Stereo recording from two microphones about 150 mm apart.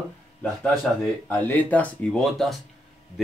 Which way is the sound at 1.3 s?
10° left (ahead or behind).